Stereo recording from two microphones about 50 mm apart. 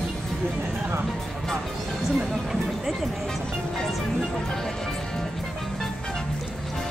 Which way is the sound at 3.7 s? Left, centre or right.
Centre.